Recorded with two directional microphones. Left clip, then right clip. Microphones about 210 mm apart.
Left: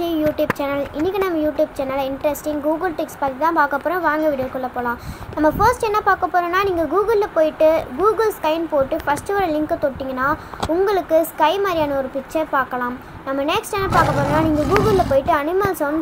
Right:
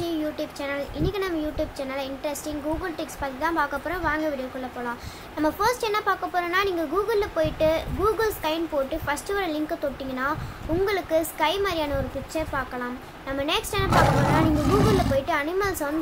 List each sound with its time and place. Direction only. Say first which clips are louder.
0.0 s speech: left 9 dB; 20° left (ahead or behind)
5.4 s speech: left 8 dB; 15° left (ahead or behind)
13.8 s speech: left 3 dB; centre (ahead or behind)
15.1 s speech: left 7 dB; 15° left (ahead or behind)